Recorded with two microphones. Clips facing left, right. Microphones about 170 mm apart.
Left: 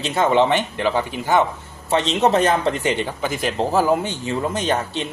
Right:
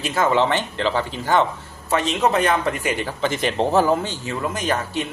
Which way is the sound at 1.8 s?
25° left (ahead or behind).